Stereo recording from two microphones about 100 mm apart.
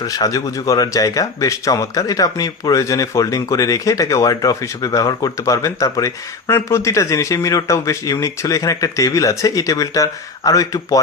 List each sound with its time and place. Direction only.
0.0 s speech: 40° left (ahead or behind)